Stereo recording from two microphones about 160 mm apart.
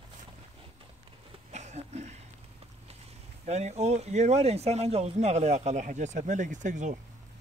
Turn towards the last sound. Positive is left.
turn(degrees=-50)  # may be behind; listen again after turning